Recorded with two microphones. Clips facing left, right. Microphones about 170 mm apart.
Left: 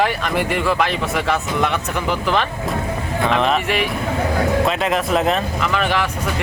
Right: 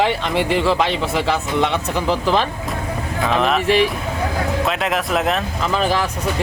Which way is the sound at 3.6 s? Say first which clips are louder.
Right 5 dB; 35° right (ahead or behind).